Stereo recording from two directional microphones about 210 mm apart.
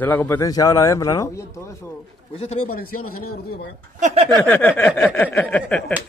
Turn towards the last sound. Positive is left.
turn(degrees=5)  # may be behind; listen again after turning